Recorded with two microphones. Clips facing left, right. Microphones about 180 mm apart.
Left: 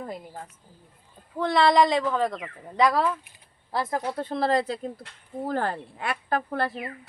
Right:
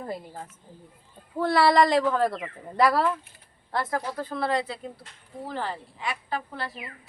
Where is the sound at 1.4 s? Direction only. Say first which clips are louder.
Even; 5° right (ahead or behind).